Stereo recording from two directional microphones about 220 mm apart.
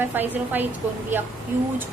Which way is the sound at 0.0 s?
10° right (ahead or behind).